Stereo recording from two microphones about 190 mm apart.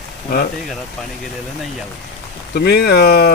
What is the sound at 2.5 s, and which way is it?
Speech, 60° left (ahead or behind).